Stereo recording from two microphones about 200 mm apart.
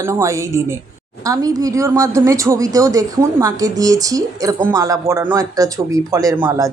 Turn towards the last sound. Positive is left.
turn(degrees=-15)  # may be behind; listen again after turning